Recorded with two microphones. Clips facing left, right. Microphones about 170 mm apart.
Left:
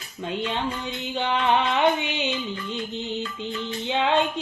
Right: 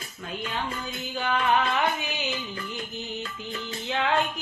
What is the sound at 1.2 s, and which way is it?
Music, 25° left (ahead or behind).